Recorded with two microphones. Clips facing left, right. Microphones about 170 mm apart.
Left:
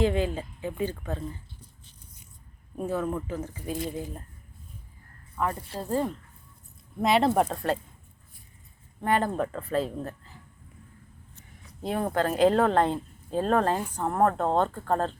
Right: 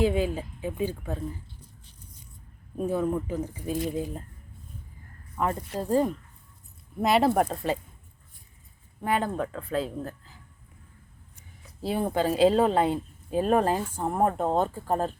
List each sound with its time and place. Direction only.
0.0 s a woman's voice: 10° right (ahead or behind)
2.8 s a woman's voice: 15° right (ahead or behind)
5.4 s a woman's voice: 20° right (ahead or behind)
7.0 s speech: centre (ahead or behind)
9.0 s speech: centre (ahead or behind)
12.0 s a woman's voice: 10° right (ahead or behind)